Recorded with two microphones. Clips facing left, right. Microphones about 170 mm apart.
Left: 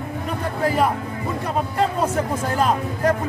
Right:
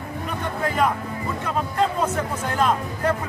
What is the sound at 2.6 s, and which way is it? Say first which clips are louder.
Speech: left 1 dB; 35° left (ahead or behind).